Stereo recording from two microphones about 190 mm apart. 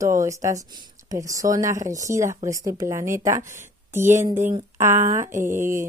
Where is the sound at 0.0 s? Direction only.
15° right (ahead or behind).